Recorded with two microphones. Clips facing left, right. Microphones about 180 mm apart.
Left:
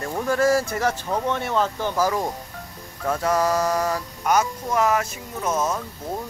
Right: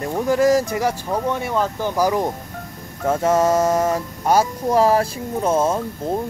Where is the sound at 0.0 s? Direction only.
15° right (ahead or behind).